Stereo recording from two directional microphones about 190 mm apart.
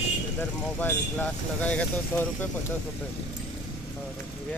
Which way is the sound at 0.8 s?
10° left (ahead or behind).